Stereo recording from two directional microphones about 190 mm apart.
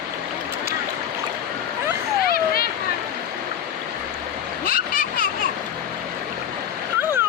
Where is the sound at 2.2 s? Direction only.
50° left (ahead or behind).